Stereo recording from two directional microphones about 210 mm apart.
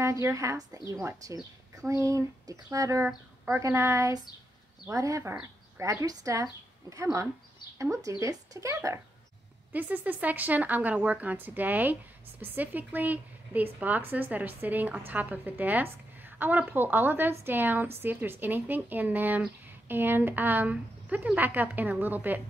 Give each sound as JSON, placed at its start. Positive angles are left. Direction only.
{"t": 0.0, "sound": "a woman's voice", "side_deg": -15}